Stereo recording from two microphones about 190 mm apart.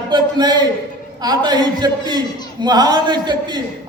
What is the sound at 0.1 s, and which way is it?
A man's voice, 20° right (ahead or behind).